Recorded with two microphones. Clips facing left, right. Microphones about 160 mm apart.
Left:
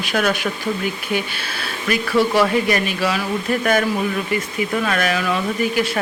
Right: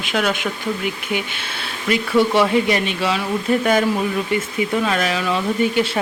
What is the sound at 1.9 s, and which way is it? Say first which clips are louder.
Speech: right 1 dB; 25° right (ahead or behind).